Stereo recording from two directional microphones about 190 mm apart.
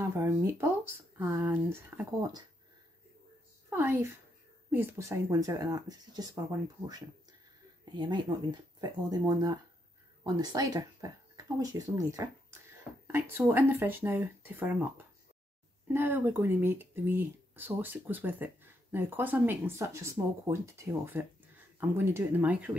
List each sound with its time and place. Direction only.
0.0 s speech: 15° right (ahead or behind)
3.7 s speech: 10° right (ahead or behind)
7.9 s speech: 25° right (ahead or behind); by 22.7 s 10° right (ahead or behind)